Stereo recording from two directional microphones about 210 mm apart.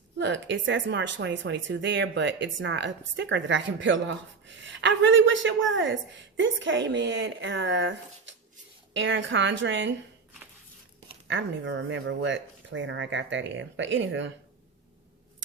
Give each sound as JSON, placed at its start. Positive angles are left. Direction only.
{"t": 0.2, "sound": "speech", "side_deg": -60}
{"t": 11.3, "sound": "speech", "side_deg": -60}